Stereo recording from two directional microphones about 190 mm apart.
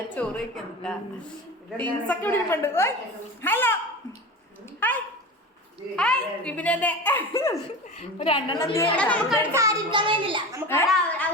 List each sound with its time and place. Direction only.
0.1 s a woman's voice: 5° left (ahead or behind)
4.8 s dog: 10° left (ahead or behind)
6.0 s a woman's voice: 5° left (ahead or behind)
8.2 s a woman's voice: 25° left (ahead or behind); by 9.5 s 10° left (ahead or behind)
9.5 s a child's voice: 15° right (ahead or behind)
10.8 s a woman's voice: 5° left (ahead or behind)